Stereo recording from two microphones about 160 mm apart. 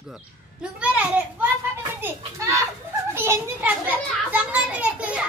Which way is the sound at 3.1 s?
15° right (ahead or behind).